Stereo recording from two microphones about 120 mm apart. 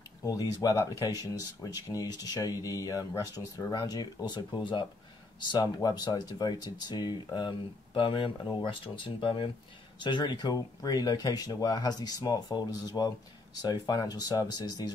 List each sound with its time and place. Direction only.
0.2 s speech: 30° left (ahead or behind)